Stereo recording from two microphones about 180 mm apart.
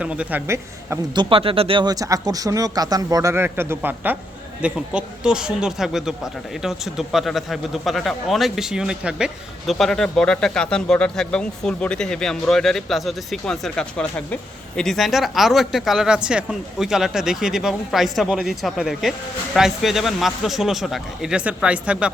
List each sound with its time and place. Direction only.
0.0 s speech: 5° right (ahead or behind)